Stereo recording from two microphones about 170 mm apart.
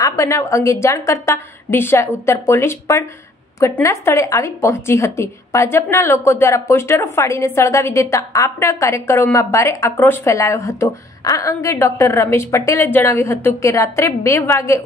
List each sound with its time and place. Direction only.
0.0 s a woman's voice: 20° left (ahead or behind)